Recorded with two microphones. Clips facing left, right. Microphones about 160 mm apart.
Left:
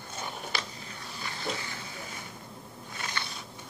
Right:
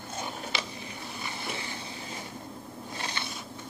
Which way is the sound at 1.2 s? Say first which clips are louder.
Left 2 dB; 20° right (ahead or behind).